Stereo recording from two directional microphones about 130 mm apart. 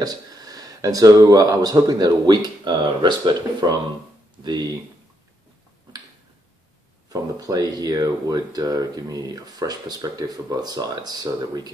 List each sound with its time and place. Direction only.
0.0 s speech: 30° right (ahead or behind)
7.1 s speech: 25° right (ahead or behind)